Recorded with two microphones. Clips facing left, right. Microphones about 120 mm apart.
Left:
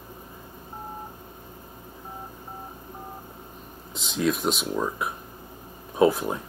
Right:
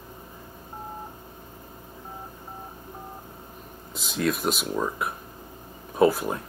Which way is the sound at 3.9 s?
Centre (ahead or behind).